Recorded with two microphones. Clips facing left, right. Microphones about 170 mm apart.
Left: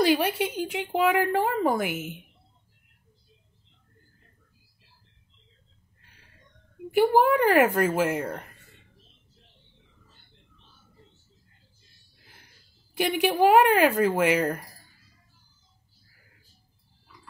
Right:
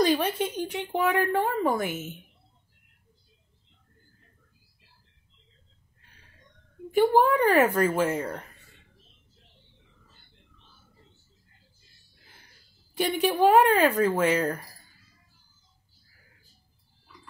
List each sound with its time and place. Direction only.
0.1 s a woman's voice: 10° left (ahead or behind)
6.9 s a woman's voice: 10° left (ahead or behind)
12.9 s a woman's voice: 10° left (ahead or behind)